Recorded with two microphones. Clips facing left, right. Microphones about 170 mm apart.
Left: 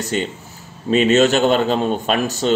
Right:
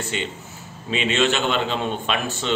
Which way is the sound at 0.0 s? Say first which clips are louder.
Left 6 dB; 40° left (ahead or behind).